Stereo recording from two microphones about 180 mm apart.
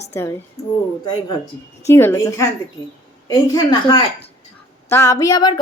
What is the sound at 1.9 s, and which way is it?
A woman's voice, 15° left (ahead or behind).